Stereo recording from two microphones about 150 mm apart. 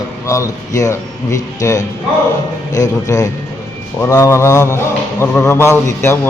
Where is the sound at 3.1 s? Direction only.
20° left (ahead or behind).